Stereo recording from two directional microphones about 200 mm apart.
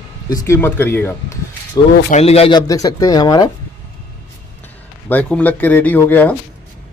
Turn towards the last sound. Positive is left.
turn(degrees=10)  # may be behind; listen again after turning